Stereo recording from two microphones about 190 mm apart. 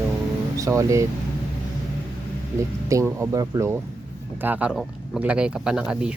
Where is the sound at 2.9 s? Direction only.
15° right (ahead or behind).